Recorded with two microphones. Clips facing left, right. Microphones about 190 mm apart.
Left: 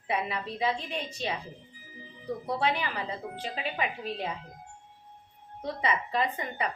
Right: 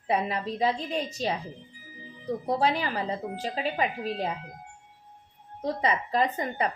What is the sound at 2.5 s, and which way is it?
A woman's voice, 40° right (ahead or behind).